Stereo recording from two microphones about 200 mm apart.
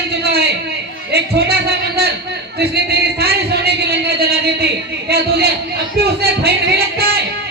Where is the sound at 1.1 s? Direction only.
50° right (ahead or behind).